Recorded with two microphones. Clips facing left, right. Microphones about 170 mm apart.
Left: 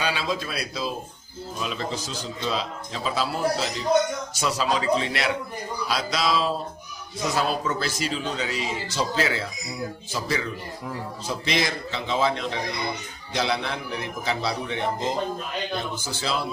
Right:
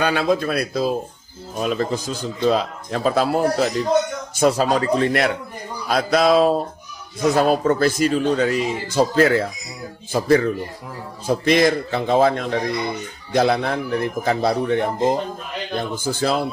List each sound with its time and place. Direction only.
0.0 s speech: 55° right (ahead or behind)